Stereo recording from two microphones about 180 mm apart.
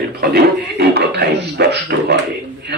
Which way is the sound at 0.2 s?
60° right (ahead or behind).